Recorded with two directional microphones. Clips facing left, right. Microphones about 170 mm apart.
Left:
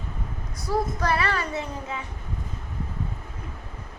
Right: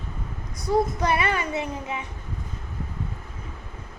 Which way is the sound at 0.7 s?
20° right (ahead or behind).